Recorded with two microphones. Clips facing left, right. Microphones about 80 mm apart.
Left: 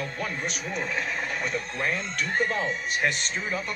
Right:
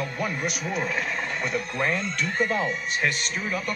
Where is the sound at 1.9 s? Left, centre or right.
Left.